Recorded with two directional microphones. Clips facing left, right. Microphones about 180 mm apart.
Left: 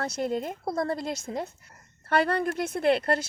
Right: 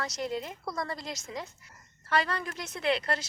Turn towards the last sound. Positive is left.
turn(degrees=55)  # may be behind; listen again after turning